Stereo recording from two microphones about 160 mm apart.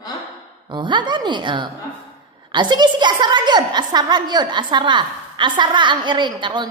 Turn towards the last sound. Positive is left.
turn(degrees=-30)  # may be behind; listen again after turning